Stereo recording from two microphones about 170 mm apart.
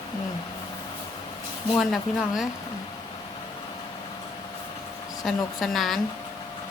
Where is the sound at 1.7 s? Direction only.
Centre (ahead or behind).